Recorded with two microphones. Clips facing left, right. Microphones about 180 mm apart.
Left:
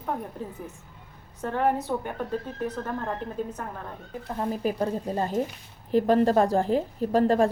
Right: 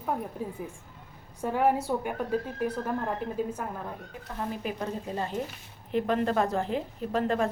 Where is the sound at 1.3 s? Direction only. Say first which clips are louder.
Even; 10° right (ahead or behind).